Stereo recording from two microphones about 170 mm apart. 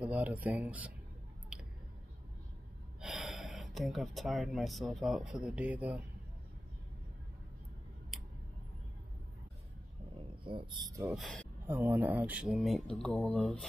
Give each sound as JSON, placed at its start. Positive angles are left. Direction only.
{"t": 0.0, "sound": "speech", "side_deg": -10}
{"t": 3.0, "sound": "speech", "side_deg": 0}
{"t": 8.1, "sound": "tick", "side_deg": 0}
{"t": 10.4, "sound": "speech", "side_deg": -30}
{"t": 11.6, "sound": "speech", "side_deg": -10}